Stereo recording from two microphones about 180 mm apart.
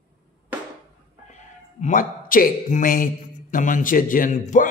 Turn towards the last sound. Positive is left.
turn(degrees=45)  # may be behind; listen again after turning